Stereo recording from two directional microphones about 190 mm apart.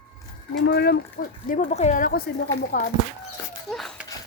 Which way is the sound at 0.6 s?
60° left (ahead or behind).